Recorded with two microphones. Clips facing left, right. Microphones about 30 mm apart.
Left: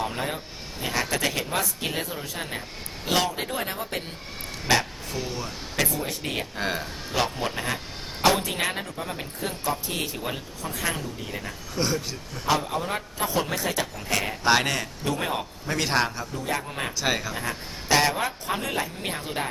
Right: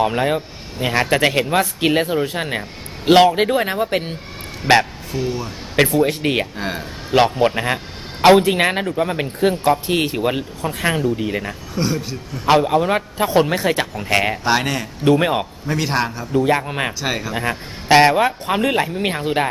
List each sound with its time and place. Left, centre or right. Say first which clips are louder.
0.0 s speech: right 11 dB; right
5.1 s speech: right 9 dB; centre
5.7 s speech: right 12 dB; right
6.6 s speech: right 3 dB; centre
7.3 s speech: right 11 dB; right
11.7 s speech: right 5 dB; centre
12.5 s speech: right 11 dB; right
14.4 s a man's voice: right 3 dB; centre
15.0 s speech: right 14 dB; right
15.6 s a man's voice: right 1 dB; centre
16.3 s speech: right 12 dB; right
17.0 s speech: right 3 dB; centre
17.3 s speech: right 8 dB; right